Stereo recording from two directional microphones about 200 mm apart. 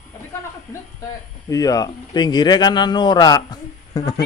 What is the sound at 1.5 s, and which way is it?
A man's voice, 20° left (ahead or behind).